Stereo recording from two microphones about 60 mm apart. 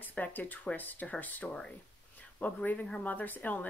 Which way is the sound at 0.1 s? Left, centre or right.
Left.